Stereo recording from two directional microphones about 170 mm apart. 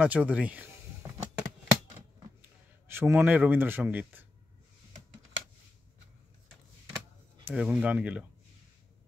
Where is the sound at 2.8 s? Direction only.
15° right (ahead or behind).